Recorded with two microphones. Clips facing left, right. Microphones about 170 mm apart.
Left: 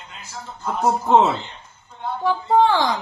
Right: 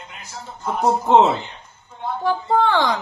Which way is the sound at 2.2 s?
60° right (ahead or behind).